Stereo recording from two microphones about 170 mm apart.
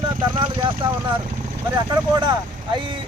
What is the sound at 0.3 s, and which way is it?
Speech, 25° right (ahead or behind).